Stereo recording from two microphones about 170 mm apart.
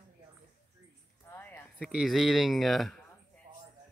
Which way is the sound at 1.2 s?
10° left (ahead or behind).